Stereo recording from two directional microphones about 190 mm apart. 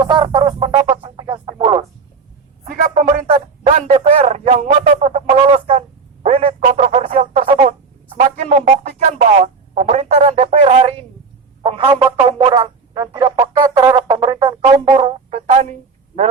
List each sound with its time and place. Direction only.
0.0 s music: 20° right (ahead or behind)
2.6 s speech: 40° right (ahead or behind)
6.2 s telephone: 30° right (ahead or behind)
6.7 s music: 40° right (ahead or behind)
8.2 s speech: 35° right (ahead or behind)
9.4 s telephone: 40° right (ahead or behind)
11.6 s music: 25° right (ahead or behind)
14.6 s music: 35° right (ahead or behind)